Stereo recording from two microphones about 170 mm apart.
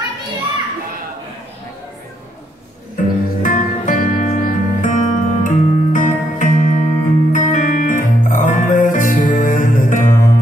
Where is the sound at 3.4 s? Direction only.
50° left (ahead or behind).